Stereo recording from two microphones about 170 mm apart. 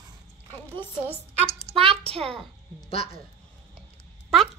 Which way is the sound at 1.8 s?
35° right (ahead or behind).